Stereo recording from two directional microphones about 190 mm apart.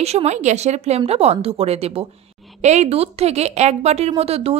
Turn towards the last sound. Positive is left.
turn(degrees=-30)  # may be behind; listen again after turning